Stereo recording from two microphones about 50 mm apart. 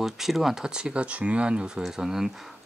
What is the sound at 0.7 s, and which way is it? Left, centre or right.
Speech, centre.